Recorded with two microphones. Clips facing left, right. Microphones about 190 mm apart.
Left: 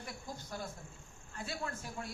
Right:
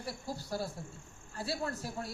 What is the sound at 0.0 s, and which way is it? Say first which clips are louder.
A woman's voice: right 5 dB; 35° right (ahead or behind).